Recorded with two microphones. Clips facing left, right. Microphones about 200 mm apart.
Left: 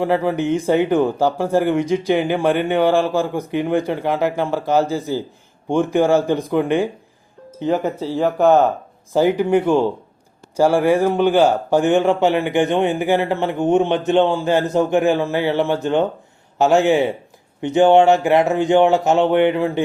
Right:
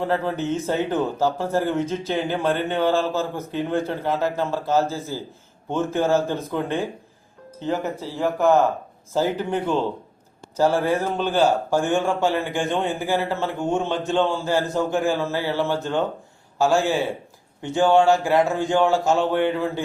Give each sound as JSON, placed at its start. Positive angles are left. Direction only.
{"t": 0.0, "sound": "speech", "side_deg": 10}